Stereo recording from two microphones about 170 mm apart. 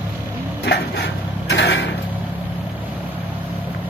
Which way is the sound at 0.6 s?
85° left.